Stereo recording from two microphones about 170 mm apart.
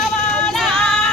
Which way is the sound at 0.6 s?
Centre (ahead or behind).